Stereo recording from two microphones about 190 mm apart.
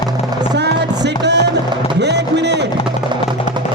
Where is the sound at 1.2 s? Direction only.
65° right (ahead or behind).